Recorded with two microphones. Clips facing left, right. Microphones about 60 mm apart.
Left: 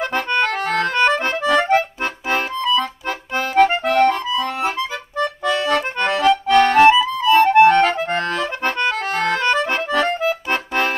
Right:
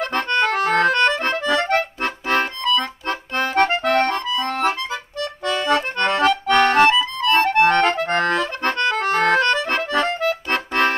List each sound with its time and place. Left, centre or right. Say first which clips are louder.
0.1 s accordion: right 1 dB; centre
0.9 s music: left 1 dB; centre
5.4 s accordion: right 1 dB; centre
6.2 s music: left 3 dB; centre
8.6 s accordion: left 1 dB; centre
8.9 s accordion: right 3 dB; right
9.5 s accordion: left 1 dB; centre